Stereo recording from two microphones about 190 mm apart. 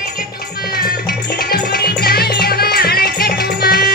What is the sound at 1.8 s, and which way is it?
Music, 55° left (ahead or behind).